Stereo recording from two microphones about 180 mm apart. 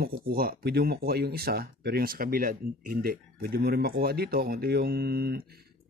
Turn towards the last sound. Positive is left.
turn(degrees=-60)  # may be behind; listen again after turning